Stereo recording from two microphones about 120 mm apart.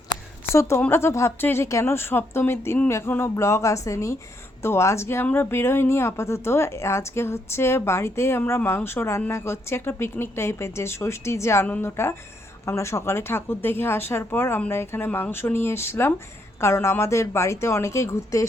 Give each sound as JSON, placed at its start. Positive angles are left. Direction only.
{"t": 0.5, "sound": "speech", "side_deg": 20}